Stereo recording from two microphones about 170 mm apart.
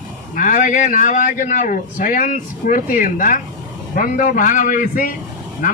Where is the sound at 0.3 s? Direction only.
50° left (ahead or behind).